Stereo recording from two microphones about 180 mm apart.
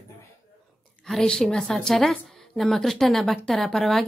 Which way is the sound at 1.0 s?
5° left (ahead or behind).